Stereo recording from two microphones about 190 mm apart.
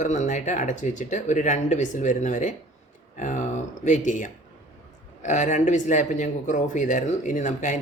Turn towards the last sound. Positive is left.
turn(degrees=40)  # may be behind; listen again after turning